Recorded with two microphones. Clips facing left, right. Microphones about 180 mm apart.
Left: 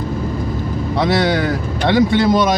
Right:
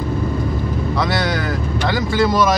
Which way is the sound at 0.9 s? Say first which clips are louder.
Left 6 dB; 25° left (ahead or behind).